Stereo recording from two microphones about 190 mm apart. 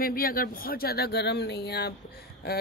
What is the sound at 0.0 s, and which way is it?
A woman's voice, 50° left (ahead or behind).